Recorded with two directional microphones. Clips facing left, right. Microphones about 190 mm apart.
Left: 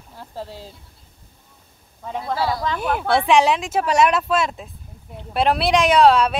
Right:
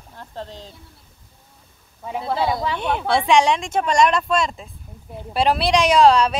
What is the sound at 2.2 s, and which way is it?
Speech, 20° right (ahead or behind).